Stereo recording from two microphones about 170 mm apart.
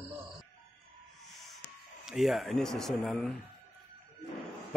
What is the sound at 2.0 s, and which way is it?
Speech, centre (ahead or behind).